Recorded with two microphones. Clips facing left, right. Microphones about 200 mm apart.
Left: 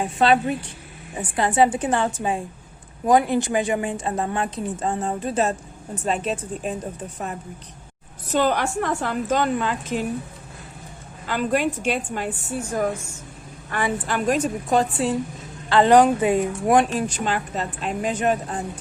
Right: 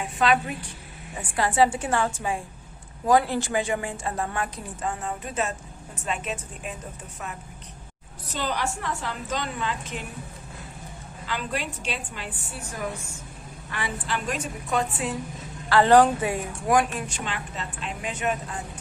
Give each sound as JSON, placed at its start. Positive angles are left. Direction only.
{"t": 0.0, "sound": "a woman's voice", "side_deg": 30}
{"t": 1.1, "sound": "a woman's voice", "side_deg": 20}
{"t": 8.3, "sound": "a woman's voice", "side_deg": 55}
{"t": 11.3, "sound": "a woman's voice", "side_deg": 50}
{"t": 13.7, "sound": "a woman's voice", "side_deg": 50}
{"t": 15.7, "sound": "a woman's voice", "side_deg": 15}
{"t": 17.2, "sound": "speech", "side_deg": 45}